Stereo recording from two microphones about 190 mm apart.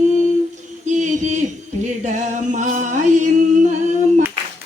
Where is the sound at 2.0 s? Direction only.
40° right (ahead or behind).